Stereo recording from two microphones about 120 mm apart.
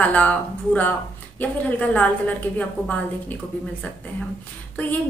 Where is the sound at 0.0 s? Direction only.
10° left (ahead or behind).